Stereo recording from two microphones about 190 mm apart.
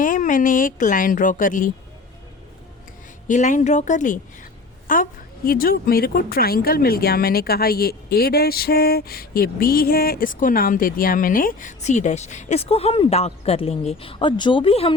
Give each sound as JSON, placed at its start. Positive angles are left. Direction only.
{"t": 0.0, "sound": "a woman's voice", "side_deg": 45}
{"t": 3.2, "sound": "a woman's voice", "side_deg": 40}